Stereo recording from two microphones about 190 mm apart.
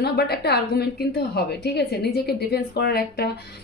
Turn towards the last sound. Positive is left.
turn(degrees=55)  # may be behind; listen again after turning